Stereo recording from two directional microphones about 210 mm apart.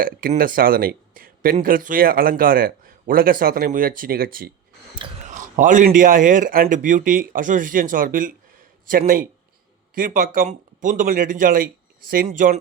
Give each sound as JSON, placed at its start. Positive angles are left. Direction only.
{"t": 0.0, "sound": "speech", "side_deg": -40}